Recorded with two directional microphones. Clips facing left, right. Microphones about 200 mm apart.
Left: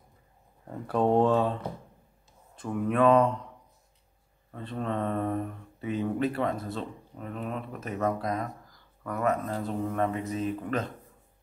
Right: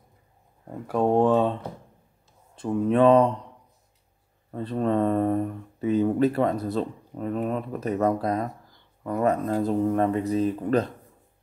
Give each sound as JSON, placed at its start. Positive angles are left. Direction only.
{"t": 0.7, "sound": "speech", "side_deg": -10}
{"t": 2.5, "sound": "speech", "side_deg": -30}
{"t": 4.5, "sound": "speech", "side_deg": -35}